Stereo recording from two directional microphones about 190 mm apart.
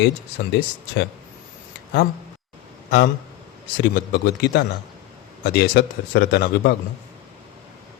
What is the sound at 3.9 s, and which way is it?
A man's voice, 60° left (ahead or behind).